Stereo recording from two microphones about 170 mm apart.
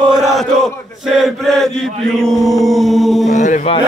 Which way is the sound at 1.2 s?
Centre (ahead or behind).